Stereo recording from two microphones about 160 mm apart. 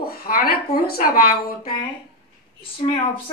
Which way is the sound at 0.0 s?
70° left (ahead or behind).